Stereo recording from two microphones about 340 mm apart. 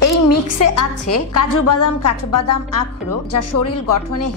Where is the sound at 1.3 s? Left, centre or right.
Left.